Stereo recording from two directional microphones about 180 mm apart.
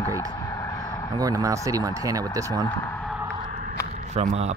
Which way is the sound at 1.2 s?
20° right (ahead or behind).